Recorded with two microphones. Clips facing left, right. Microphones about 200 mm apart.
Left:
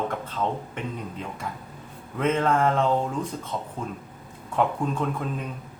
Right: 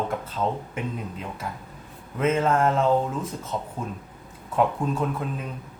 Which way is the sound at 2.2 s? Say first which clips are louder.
Right 1 dB; 5° right (ahead or behind).